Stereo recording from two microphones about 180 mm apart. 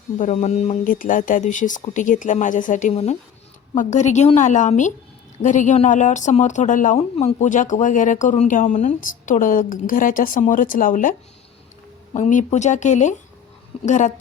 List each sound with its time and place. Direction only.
0.2 s a woman's voice: 40° left (ahead or behind)
12.1 s speech: 45° left (ahead or behind)